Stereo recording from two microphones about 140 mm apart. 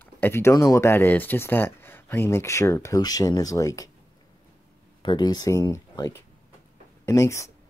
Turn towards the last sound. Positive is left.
turn(degrees=20)  # may be behind; listen again after turning